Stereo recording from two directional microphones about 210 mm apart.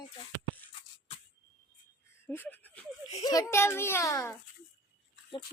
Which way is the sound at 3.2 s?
15° left (ahead or behind).